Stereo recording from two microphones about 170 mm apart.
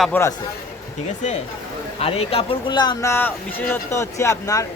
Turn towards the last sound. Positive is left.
turn(degrees=20)  # may be behind; listen again after turning